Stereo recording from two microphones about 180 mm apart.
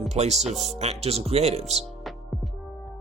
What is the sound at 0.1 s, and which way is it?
Speech, 40° right (ahead or behind).